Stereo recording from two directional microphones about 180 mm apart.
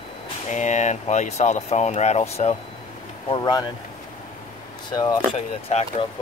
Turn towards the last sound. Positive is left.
turn(degrees=40)  # may be behind; listen again after turning